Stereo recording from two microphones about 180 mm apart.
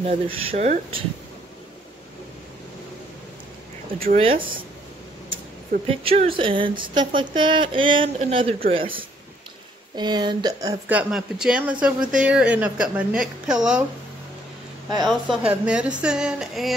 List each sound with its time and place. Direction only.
0.0 s speech: 35° right (ahead or behind)
4.0 s speech: 30° right (ahead or behind)
5.9 s speech: 30° right (ahead or behind); by 13.7 s 5° right (ahead or behind)
15.0 s speech: 5° right (ahead or behind)